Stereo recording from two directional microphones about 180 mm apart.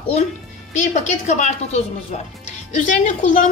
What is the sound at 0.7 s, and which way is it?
A woman's voice, 40° left (ahead or behind).